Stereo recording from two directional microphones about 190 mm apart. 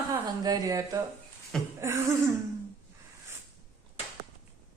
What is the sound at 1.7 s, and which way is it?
Cough, 15° right (ahead or behind).